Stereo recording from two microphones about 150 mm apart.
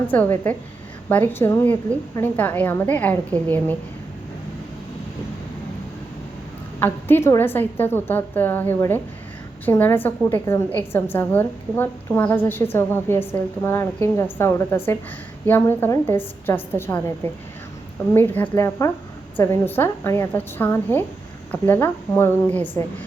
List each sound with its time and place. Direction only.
0.1 s a woman's voice: 10° left (ahead or behind)
6.7 s a woman's voice: 15° left (ahead or behind)